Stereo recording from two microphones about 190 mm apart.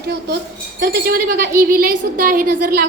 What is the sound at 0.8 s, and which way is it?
A woman's voice, 55° right (ahead or behind).